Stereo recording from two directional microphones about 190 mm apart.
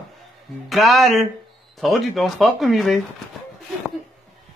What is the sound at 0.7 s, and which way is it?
Speech, centre (ahead or behind).